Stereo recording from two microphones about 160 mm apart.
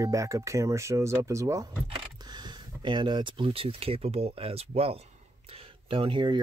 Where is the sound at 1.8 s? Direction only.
30° right (ahead or behind).